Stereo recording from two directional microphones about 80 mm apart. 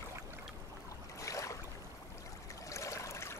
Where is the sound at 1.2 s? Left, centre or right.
Left.